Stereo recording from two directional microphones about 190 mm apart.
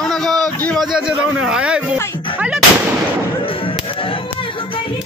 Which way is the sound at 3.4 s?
30° left (ahead or behind).